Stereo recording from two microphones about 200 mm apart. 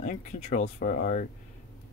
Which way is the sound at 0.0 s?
40° left (ahead or behind).